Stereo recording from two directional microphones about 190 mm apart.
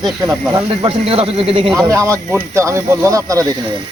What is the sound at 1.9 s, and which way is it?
Speech, 15° right (ahead or behind).